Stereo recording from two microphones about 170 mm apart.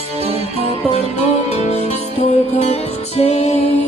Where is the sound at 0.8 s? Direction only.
40° left (ahead or behind).